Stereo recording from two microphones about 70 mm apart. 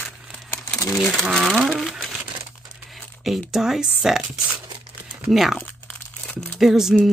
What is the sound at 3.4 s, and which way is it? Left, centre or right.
Speech, centre.